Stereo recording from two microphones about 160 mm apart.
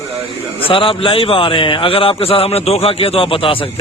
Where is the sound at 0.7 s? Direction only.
35° left (ahead or behind).